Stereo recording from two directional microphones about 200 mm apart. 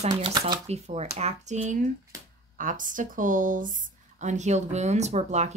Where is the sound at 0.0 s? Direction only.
25° right (ahead or behind).